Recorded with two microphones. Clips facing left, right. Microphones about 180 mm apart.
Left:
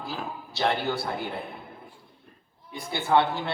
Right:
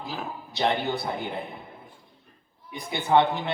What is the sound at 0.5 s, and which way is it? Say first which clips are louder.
A man's voice: right 1 dB; 20° right (ahead or behind).